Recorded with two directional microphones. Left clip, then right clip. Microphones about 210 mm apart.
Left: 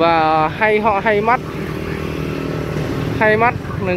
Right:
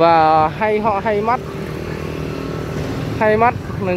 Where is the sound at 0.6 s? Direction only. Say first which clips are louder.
Left 2 dB; 5° right (ahead or behind).